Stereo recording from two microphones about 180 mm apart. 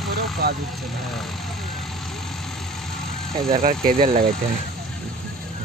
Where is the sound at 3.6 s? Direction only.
50° right (ahead or behind).